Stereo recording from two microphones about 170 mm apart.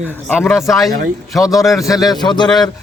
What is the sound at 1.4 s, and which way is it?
A man's voice, 20° left (ahead or behind).